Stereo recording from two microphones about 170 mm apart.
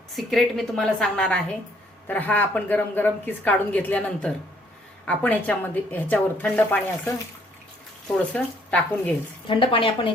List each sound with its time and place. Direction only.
0.2 s a woman's voice: centre (ahead or behind)
9.5 s a woman's voice: 30° left (ahead or behind)